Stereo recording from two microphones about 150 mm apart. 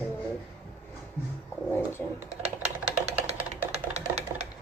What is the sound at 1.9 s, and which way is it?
Speech, 15° left (ahead or behind).